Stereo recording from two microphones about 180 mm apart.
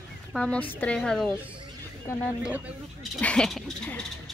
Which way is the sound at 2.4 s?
5° right (ahead or behind).